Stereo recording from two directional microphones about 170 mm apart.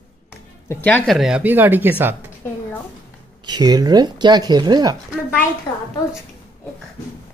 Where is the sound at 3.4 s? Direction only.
25° right (ahead or behind).